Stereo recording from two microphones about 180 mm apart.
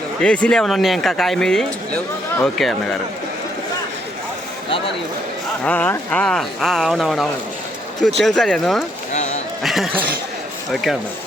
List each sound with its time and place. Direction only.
0.2 s speech: 5° left (ahead or behind)
5.6 s speech: 10° left (ahead or behind)
9.1 s a sound: 40° left (ahead or behind)
9.6 s speech: centre (ahead or behind)